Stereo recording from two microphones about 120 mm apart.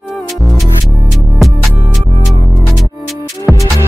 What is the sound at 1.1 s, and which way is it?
Music, centre (ahead or behind).